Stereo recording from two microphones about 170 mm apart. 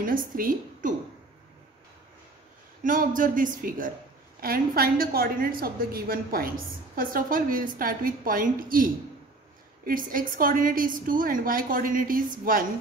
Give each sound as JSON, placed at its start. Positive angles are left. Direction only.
{"t": 0.0, "sound": "a woman's voice", "side_deg": -55}
{"t": 2.8, "sound": "a man's voice", "side_deg": -50}